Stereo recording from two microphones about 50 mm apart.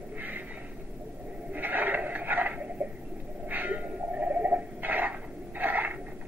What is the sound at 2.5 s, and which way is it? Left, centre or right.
Bird, right.